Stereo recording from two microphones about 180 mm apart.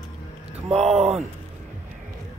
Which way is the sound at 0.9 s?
Centre (ahead or behind).